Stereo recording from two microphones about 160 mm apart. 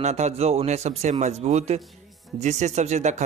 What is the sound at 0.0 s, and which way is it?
Speech, 45° right (ahead or behind).